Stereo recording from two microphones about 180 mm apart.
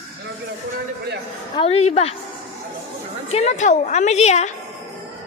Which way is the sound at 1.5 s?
35° left (ahead or behind).